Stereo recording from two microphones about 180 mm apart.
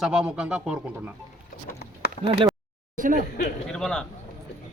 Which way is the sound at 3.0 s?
45° right (ahead or behind).